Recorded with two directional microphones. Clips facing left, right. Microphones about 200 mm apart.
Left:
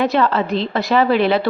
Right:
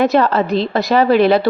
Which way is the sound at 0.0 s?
45° right (ahead or behind).